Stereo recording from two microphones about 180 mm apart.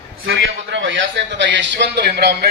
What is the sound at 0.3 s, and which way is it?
A man's voice, 90° right.